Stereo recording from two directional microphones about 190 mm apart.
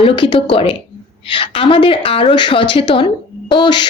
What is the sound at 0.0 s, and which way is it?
A woman's voice, 25° left (ahead or behind).